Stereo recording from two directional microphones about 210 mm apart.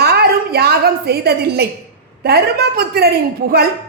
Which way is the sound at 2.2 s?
50° right (ahead or behind).